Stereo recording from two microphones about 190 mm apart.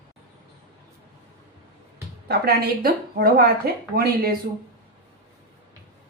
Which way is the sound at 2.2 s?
60° right (ahead or behind).